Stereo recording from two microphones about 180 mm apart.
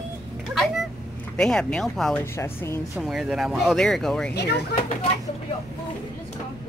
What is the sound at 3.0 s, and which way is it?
Speech, 5° right (ahead or behind).